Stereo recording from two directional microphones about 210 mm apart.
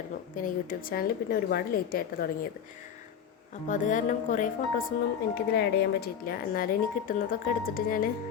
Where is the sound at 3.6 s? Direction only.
35° left (ahead or behind).